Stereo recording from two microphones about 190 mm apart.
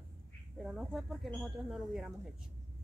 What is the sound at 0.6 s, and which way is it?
Speech, centre (ahead or behind).